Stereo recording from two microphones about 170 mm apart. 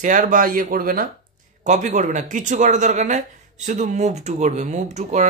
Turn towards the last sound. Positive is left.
turn(degrees=-45)  # may be behind; listen again after turning